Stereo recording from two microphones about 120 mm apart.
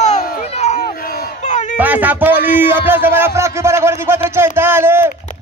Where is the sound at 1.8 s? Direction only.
15° right (ahead or behind).